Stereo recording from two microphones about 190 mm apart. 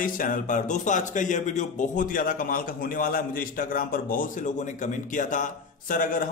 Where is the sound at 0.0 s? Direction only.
45° left (ahead or behind).